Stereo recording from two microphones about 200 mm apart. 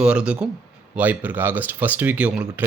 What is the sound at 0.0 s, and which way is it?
Speech, 5° right (ahead or behind).